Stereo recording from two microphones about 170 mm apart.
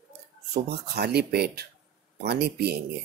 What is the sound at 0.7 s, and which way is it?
Speech, 70° right (ahead or behind).